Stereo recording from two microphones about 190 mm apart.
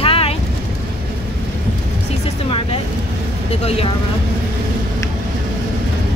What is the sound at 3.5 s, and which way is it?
Speech, 30° left (ahead or behind).